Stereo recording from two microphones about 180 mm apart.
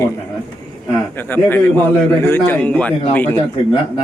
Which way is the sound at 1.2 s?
10° left (ahead or behind).